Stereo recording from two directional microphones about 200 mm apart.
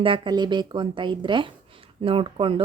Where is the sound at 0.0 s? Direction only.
25° right (ahead or behind).